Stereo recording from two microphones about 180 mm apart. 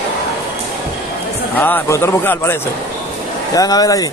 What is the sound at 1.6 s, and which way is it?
Speech, 10° left (ahead or behind).